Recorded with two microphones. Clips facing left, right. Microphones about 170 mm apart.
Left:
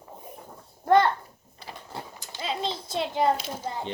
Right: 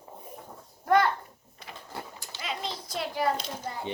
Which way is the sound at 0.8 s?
30° left (ahead or behind).